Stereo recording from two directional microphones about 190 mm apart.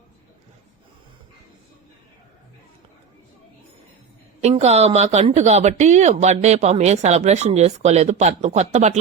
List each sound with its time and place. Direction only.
4.4 s speech: 35° right (ahead or behind)